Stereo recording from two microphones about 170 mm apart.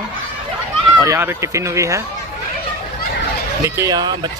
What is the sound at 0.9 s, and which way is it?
Speech, 15° right (ahead or behind).